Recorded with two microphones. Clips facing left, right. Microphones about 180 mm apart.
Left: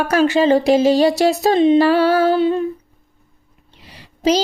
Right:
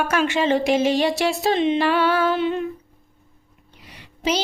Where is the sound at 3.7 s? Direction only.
30° left (ahead or behind).